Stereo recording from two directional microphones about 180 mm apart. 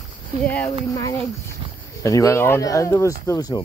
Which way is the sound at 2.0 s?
15° left (ahead or behind).